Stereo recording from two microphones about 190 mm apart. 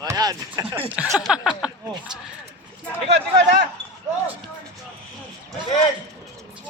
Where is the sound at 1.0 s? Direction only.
5° right (ahead or behind).